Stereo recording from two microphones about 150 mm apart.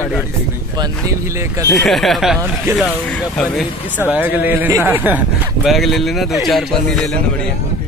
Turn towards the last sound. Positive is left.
turn(degrees=5)  # may be behind; listen again after turning